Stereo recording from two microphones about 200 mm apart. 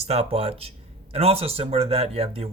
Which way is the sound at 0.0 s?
30° right (ahead or behind).